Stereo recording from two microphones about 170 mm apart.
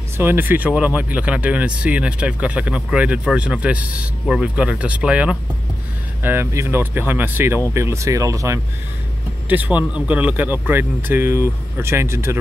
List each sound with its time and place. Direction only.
0.2 s speech: 10° right (ahead or behind)